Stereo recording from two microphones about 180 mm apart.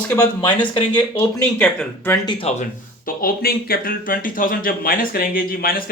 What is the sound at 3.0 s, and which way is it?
Speech, 50° left (ahead or behind).